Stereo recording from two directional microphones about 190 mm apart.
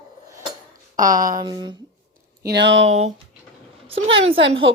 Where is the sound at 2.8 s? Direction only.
35° right (ahead or behind).